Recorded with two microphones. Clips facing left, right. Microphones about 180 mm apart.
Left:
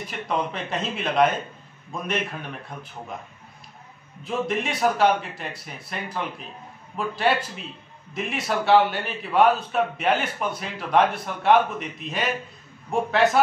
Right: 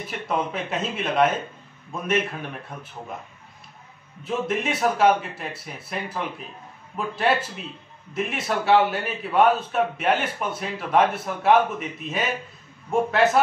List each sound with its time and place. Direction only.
0.1 s a man's voice: 5° right (ahead or behind)
4.2 s a man's voice: centre (ahead or behind)